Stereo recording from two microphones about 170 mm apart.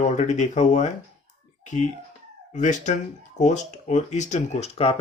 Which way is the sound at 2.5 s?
45° left (ahead or behind).